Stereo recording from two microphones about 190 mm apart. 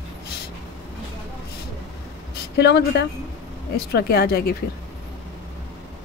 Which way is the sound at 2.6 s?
65° left (ahead or behind).